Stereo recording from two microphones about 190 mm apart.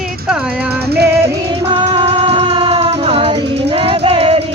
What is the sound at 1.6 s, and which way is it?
Music, 30° right (ahead or behind).